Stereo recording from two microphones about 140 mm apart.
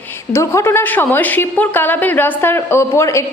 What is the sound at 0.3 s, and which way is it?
A woman's voice, 20° left (ahead or behind).